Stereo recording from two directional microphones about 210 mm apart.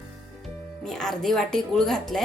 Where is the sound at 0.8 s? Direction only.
Centre (ahead or behind).